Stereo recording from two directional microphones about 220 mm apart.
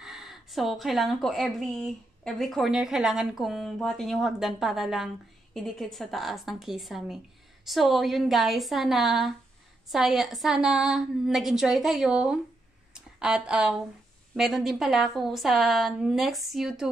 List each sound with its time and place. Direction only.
0.0 s speech: centre (ahead or behind)